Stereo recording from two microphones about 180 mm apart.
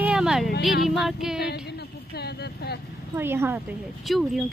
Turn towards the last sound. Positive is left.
turn(degrees=0)  # may be behind; listen again after turning